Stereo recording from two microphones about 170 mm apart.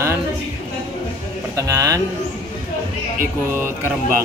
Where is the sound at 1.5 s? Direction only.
20° right (ahead or behind).